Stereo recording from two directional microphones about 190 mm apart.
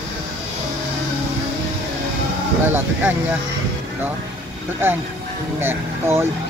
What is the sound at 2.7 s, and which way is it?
Speech, 10° right (ahead or behind).